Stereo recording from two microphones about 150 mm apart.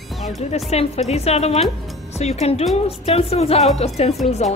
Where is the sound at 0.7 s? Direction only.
45° left (ahead or behind).